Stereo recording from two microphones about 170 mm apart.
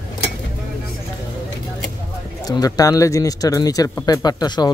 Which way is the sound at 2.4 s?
20° left (ahead or behind).